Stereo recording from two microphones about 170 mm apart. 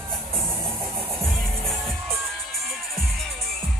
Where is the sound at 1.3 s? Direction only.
Centre (ahead or behind).